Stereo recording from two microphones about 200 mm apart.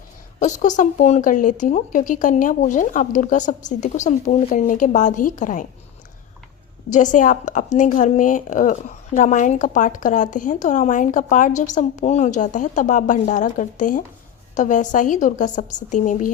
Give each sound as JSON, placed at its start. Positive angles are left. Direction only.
{"t": 0.3, "sound": "speech", "side_deg": 40}
{"t": 6.9, "sound": "speech", "side_deg": 40}